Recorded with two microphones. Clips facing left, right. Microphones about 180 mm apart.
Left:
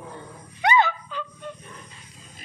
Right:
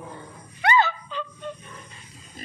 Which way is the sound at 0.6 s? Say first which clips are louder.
Left 1 dB; 20° left (ahead or behind).